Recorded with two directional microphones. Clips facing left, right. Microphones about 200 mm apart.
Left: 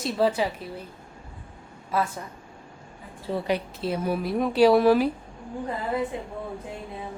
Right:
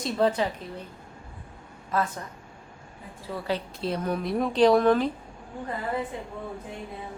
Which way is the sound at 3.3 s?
30° left (ahead or behind).